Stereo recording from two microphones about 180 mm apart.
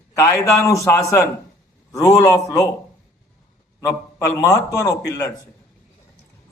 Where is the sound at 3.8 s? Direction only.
15° left (ahead or behind).